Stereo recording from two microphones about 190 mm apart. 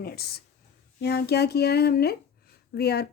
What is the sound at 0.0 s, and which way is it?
A woman's voice, 55° left (ahead or behind).